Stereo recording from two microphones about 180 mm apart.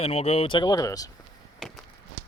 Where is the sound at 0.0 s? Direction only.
35° left (ahead or behind).